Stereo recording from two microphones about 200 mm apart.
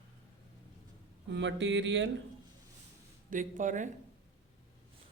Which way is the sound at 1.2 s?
65° right (ahead or behind).